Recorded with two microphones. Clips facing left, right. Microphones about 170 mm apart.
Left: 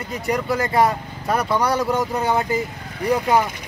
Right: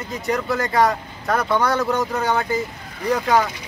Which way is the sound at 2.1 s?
15° left (ahead or behind).